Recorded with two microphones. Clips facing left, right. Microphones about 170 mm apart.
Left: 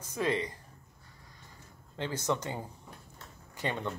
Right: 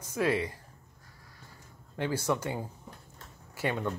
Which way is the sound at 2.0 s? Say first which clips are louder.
Right 2 dB; 10° right (ahead or behind).